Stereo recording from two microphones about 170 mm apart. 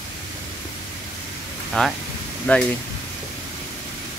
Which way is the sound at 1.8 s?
5° left (ahead or behind).